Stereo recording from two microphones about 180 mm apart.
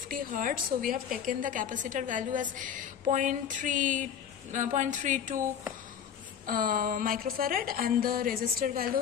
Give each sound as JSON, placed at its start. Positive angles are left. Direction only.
{"t": 0.1, "sound": "a woman's voice", "side_deg": -50}
{"t": 6.4, "sound": "a woman's voice", "side_deg": -50}